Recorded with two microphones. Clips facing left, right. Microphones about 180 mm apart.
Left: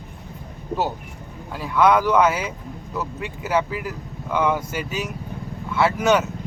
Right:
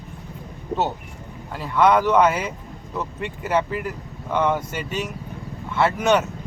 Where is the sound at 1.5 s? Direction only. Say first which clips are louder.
Even; 5° left (ahead or behind).